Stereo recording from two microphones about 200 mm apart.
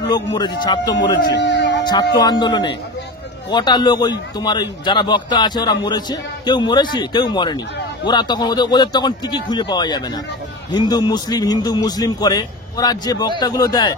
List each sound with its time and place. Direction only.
0.1 s a man's voice: 20° left (ahead or behind)
0.9 s speech: 60° left (ahead or behind)
2.1 s a man's voice: 20° left (ahead or behind)